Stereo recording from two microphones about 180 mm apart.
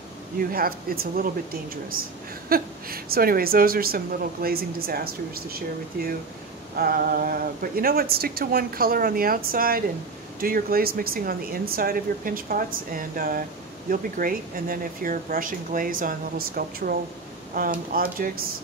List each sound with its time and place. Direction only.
0.4 s speech: 55° right (ahead or behind)